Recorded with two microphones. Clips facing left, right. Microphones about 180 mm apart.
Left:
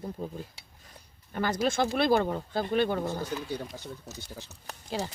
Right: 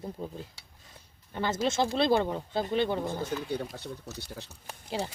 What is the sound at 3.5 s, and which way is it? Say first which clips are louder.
Speech: right 2 dB; 60° right (ahead or behind).